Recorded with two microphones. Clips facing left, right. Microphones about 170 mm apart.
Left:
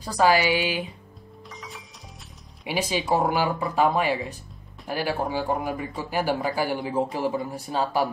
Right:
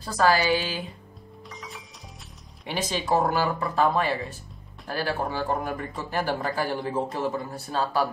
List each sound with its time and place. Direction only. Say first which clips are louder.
0.0 s speech: left 2 dB; 15° left (ahead or behind)
1.5 s music: even; centre (ahead or behind)
2.6 s speech: left 3 dB; 10° left (ahead or behind)